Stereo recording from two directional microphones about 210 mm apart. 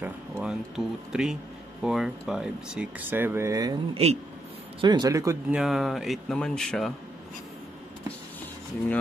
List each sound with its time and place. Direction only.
0.0 s speech: 5° right (ahead or behind)
3.9 s a man's voice: 30° right (ahead or behind); by 5.6 s 15° right (ahead or behind)
5.6 s speech: centre (ahead or behind)